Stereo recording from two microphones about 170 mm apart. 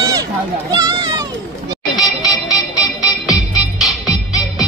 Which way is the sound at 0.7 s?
20° right (ahead or behind).